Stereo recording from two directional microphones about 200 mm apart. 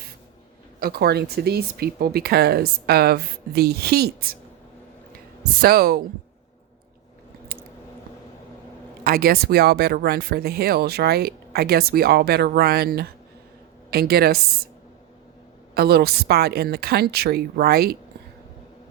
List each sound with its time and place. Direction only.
0.8 s speech: 50° right (ahead or behind)
5.5 s speech: 50° right (ahead or behind)
9.0 s speech: 50° right (ahead or behind)
15.7 s speech: 50° right (ahead or behind)